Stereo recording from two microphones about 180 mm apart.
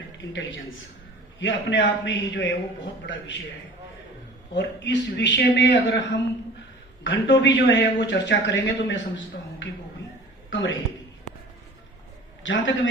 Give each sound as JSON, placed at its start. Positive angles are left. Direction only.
{"t": 1.4, "sound": "a man's voice", "side_deg": 90}
{"t": 4.5, "sound": "a man's voice", "side_deg": 75}
{"t": 7.0, "sound": "a man's voice", "side_deg": 85}
{"t": 12.4, "sound": "a man's voice", "side_deg": 90}